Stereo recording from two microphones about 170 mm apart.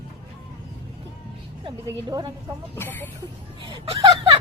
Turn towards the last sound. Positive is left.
turn(degrees=-30)  # may be behind; listen again after turning